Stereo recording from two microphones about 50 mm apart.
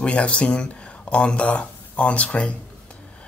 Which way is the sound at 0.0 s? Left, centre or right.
Left.